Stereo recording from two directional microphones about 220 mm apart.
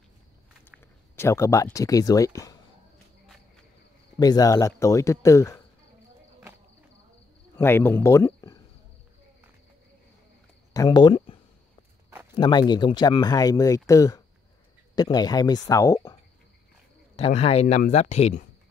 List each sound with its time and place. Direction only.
1.1 s speech: 10° left (ahead or behind)
4.2 s speech: 15° left (ahead or behind)
7.5 s speech: 10° left (ahead or behind)
10.7 s a sound: 15° left (ahead or behind)
12.4 s speech: 20° left (ahead or behind)
17.2 s speech: 30° left (ahead or behind)